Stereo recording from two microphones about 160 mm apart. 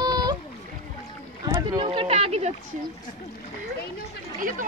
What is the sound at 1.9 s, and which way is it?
Speech, 35° right (ahead or behind).